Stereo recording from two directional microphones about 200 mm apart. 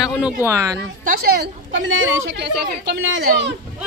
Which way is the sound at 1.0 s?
50° right (ahead or behind).